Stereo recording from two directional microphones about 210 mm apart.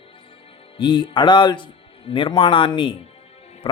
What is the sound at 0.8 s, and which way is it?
Speech, 20° left (ahead or behind).